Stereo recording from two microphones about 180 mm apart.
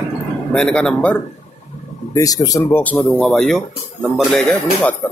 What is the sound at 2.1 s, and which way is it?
Speech, 20° left (ahead or behind).